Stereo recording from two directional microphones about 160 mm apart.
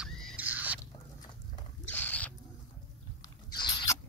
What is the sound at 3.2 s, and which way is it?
Rodents, 25° left (ahead or behind).